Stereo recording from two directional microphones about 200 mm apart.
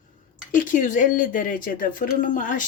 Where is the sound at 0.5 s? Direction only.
40° left (ahead or behind).